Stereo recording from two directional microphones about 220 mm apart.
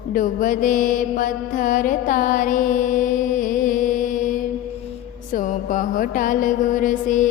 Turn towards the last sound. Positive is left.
turn(degrees=35)  # may be behind; listen again after turning